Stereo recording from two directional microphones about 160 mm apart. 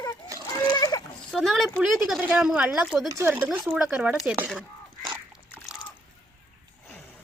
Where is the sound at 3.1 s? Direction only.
15° right (ahead or behind); by 4.6 s centre (ahead or behind).